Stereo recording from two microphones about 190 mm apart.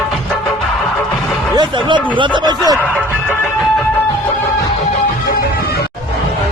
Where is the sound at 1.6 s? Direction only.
25° right (ahead or behind).